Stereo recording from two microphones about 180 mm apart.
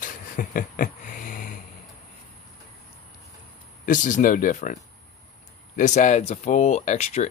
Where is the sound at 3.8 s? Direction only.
45° left (ahead or behind).